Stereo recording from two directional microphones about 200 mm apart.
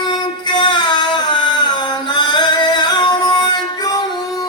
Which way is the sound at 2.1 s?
20° left (ahead or behind).